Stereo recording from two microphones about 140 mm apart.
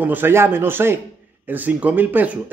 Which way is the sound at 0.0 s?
15° right (ahead or behind).